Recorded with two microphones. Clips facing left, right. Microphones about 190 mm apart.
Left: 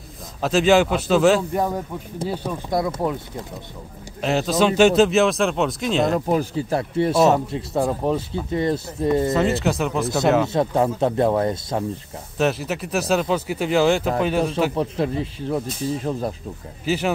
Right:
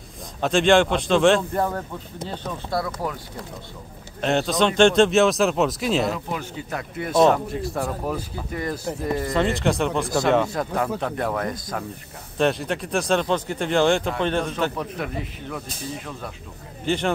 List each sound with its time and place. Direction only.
0.4 s speech: 5° left (ahead or behind); by 3.2 s 20° left (ahead or behind)
4.2 s speech: centre (ahead or behind)
6.1 s speech: 40° left (ahead or behind)
9.3 s speech: 5° left (ahead or behind)
10.5 s speech: 25° left (ahead or behind)
12.4 s speech: 5° left (ahead or behind)
14.8 s speech: 30° left (ahead or behind)
16.8 s speech: 5° left (ahead or behind)